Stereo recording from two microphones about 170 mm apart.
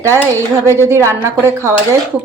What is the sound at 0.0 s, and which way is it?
Speech, 15° right (ahead or behind).